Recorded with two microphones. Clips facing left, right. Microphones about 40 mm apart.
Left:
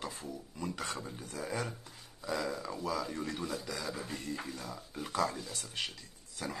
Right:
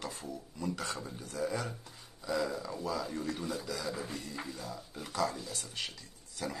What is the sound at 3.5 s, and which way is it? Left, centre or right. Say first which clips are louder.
Speech: right 1 dB; centre.